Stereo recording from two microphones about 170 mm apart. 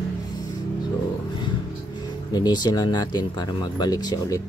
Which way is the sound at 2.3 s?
25° left (ahead or behind).